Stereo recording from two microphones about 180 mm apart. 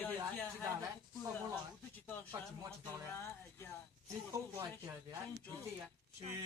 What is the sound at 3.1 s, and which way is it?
Speech, 15° left (ahead or behind).